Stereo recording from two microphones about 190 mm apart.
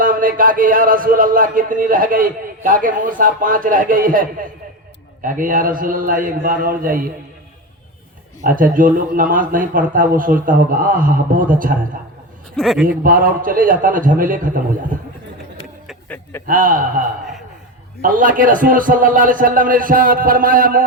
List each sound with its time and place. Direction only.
0.0 s speech: 45° right (ahead or behind)
8.4 s speech: 45° right (ahead or behind)
12.5 s a man's voice: centre (ahead or behind)
13.0 s speech: 45° right (ahead or behind)
15.9 s a sound: 10° left (ahead or behind)
16.5 s speech: 45° right (ahead or behind)
18.0 s speech: 45° right (ahead or behind)